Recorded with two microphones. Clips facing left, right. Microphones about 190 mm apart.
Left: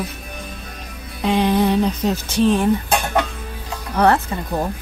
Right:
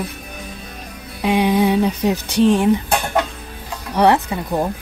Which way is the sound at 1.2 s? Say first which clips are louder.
Right 1 dB; 10° right (ahead or behind).